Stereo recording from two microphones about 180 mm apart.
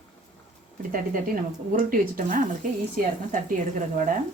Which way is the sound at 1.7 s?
50° right (ahead or behind).